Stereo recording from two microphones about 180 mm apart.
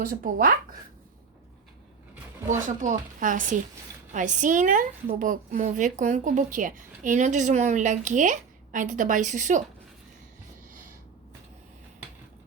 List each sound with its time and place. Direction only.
0.0 s a woman's voice: 50° right (ahead or behind)
2.6 s a woman's voice: 45° right (ahead or behind)